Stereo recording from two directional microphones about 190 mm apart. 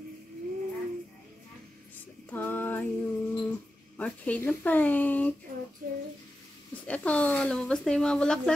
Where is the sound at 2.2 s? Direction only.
10° left (ahead or behind).